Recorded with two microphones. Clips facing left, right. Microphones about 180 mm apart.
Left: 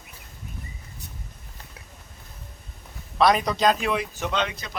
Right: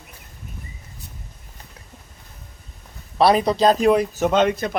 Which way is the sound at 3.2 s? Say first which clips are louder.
Right 4 dB; 35° right (ahead or behind).